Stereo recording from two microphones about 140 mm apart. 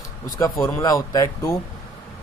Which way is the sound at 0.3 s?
25° left (ahead or behind).